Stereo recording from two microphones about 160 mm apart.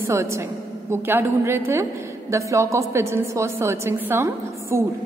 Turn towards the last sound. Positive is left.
turn(degrees=-15)  # may be behind; listen again after turning